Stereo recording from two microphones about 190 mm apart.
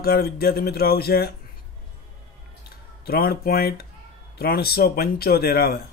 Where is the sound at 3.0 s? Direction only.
50° left (ahead or behind).